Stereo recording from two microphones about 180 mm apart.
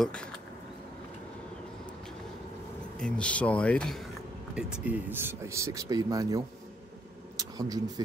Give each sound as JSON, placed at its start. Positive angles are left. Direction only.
{"t": 0.0, "sound": "speech", "side_deg": 5}
{"t": 3.0, "sound": "speech", "side_deg": 5}
{"t": 7.3, "sound": "vehicle", "side_deg": -20}